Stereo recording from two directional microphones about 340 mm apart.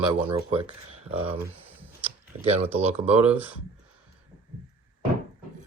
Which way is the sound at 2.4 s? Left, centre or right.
Centre.